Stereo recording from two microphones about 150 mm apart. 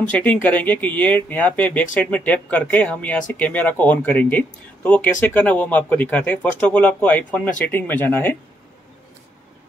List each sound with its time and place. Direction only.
0.1 s speech: 10° left (ahead or behind)